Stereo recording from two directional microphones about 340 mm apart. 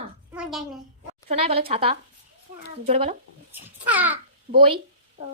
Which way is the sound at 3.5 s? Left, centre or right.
Centre.